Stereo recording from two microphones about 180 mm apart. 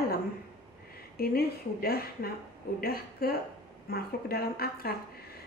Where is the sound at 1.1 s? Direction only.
55° left (ahead or behind).